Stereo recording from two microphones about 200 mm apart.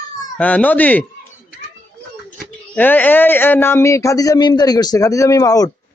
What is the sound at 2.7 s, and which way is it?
Speech, 10° left (ahead or behind).